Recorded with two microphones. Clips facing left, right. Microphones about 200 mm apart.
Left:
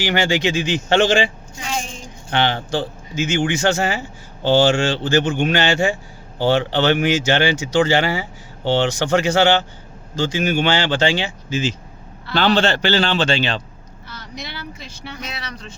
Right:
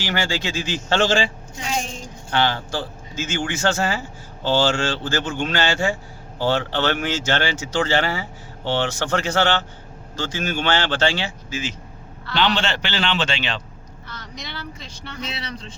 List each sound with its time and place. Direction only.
0.0 s speech: 15° left (ahead or behind)
1.6 s a sound: centre (ahead or behind)
2.3 s speech: 20° left (ahead or behind)
12.3 s a man's voice: 40° left (ahead or behind)
14.1 s speech: 5° left (ahead or behind)
15.2 s speech: 30° right (ahead or behind)